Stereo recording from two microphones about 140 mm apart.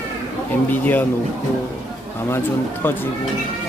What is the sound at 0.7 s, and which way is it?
Speech, 15° left (ahead or behind).